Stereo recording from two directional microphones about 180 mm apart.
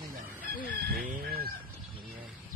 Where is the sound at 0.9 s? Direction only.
50° right (ahead or behind).